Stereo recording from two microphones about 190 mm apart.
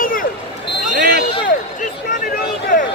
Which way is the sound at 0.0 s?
45° left (ahead or behind).